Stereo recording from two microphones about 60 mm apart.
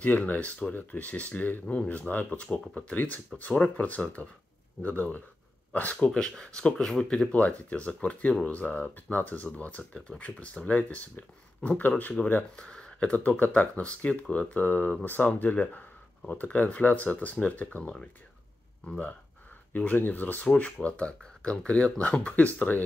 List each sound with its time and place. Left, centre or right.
0.0 s speech: left
5.9 s speech: centre
7.3 s speech: left
12.5 s speech: centre